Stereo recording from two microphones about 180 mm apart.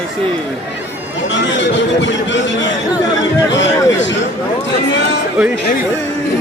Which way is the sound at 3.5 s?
90° left.